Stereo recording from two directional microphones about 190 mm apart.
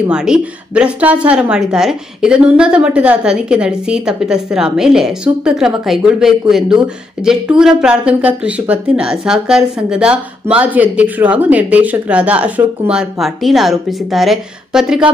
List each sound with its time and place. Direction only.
0.1 s a woman's voice: 5° right (ahead or behind)